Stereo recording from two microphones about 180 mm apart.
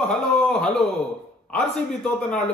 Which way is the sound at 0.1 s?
5° left (ahead or behind).